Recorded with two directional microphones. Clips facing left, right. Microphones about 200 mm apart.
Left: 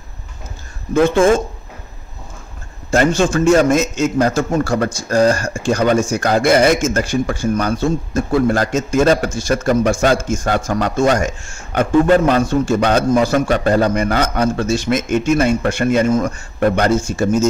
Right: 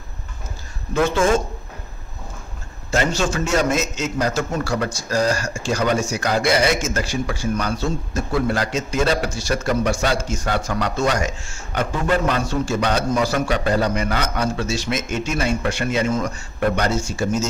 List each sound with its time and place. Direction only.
1.0 s a man's voice: 55° left (ahead or behind)
2.9 s a man's voice: 55° left (ahead or behind)